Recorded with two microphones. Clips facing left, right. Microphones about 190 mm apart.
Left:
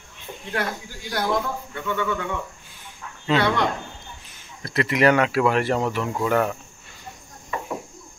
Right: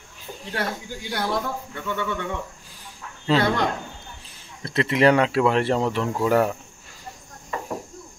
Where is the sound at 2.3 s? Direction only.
35° right (ahead or behind).